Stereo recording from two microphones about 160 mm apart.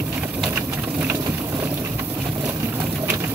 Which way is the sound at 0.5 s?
15° right (ahead or behind).